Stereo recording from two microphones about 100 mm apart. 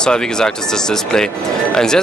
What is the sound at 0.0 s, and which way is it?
Speech, 5° left (ahead or behind).